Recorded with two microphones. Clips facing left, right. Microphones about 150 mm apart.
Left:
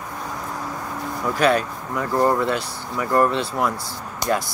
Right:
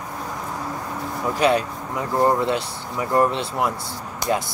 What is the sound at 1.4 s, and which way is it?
Speech, 20° right (ahead or behind).